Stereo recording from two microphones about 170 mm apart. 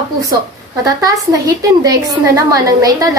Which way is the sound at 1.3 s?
20° right (ahead or behind).